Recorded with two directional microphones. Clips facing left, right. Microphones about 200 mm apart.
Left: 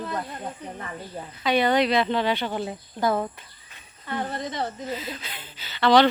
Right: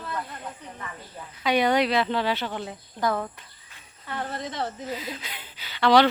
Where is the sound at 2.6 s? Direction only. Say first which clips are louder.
Left 3 dB; 30° left (ahead or behind).